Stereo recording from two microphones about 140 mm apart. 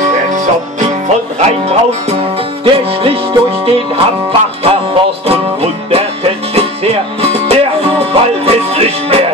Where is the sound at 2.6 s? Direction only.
40° right (ahead or behind).